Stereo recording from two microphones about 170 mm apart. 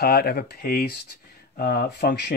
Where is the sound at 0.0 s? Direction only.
65° left (ahead or behind).